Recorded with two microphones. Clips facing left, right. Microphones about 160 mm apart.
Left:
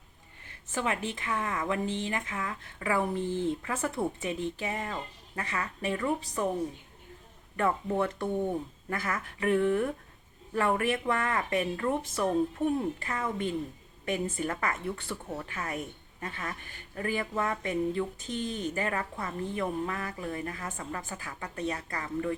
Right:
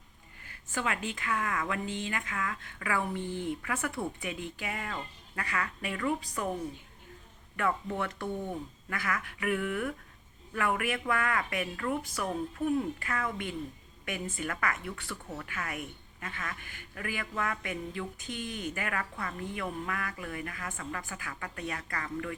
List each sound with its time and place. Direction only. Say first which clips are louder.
0.4 s speech: left 2 dB; 25° left (ahead or behind)
7.5 s speech: left 3 dB; 30° left (ahead or behind)